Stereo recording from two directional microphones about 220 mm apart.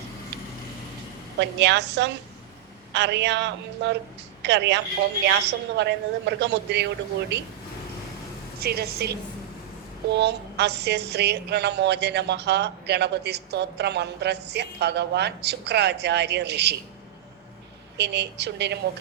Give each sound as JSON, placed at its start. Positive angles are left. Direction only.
{"t": 1.4, "sound": "a woman's voice", "side_deg": -55}
{"t": 8.6, "sound": "a woman's voice", "side_deg": -45}
{"t": 17.9, "sound": "a woman's voice", "side_deg": -50}